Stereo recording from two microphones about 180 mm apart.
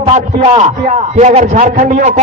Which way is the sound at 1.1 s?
40° right (ahead or behind).